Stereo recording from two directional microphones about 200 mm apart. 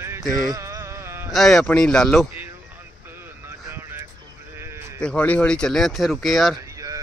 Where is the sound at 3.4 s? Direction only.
10° right (ahead or behind).